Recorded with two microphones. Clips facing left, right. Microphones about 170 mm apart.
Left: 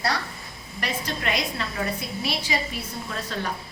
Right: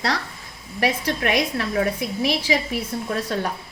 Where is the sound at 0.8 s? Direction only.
70° right (ahead or behind).